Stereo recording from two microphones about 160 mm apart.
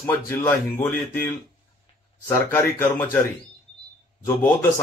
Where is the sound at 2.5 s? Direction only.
10° left (ahead or behind).